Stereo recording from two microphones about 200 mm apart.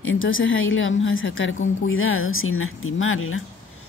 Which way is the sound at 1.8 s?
85° left.